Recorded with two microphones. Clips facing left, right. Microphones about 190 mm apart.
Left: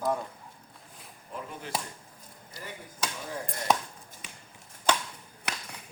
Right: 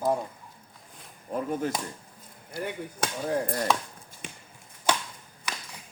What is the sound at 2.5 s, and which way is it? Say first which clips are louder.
Chop: right 10 dB; 60° right (ahead or behind).